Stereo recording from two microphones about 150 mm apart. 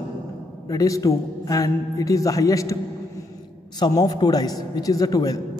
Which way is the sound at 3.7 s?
30° left (ahead or behind).